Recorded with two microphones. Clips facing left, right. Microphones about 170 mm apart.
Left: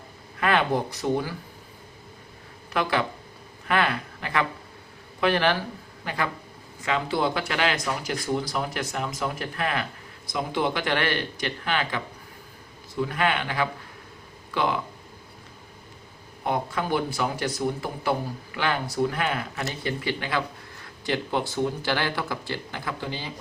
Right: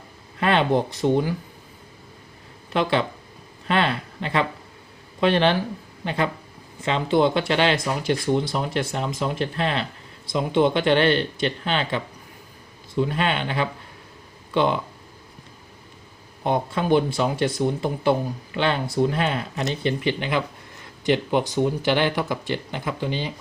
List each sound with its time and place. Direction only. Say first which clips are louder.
0.3 s speech: right 3 dB; 25° right (ahead or behind)
2.7 s speech: right 3 dB; 25° right (ahead or behind)
16.4 s speech: right 4 dB; 25° right (ahead or behind)